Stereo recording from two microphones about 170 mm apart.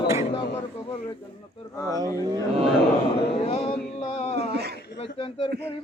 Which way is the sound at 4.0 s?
40° left (ahead or behind).